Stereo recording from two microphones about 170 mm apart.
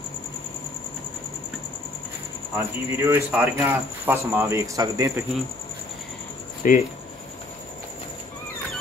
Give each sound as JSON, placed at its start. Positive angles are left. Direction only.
{"t": 2.5, "sound": "speech", "side_deg": -15}
{"t": 6.6, "sound": "speech", "side_deg": 50}